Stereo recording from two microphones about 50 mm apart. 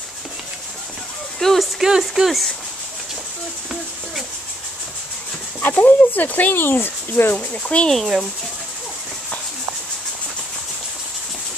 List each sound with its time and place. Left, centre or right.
1.4 s speech: centre
1.8 s speech: centre
2.2 s speech: centre
5.6 s speech: left
7.3 s speech: left